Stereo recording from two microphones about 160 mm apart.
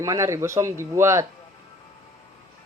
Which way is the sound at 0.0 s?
20° right (ahead or behind).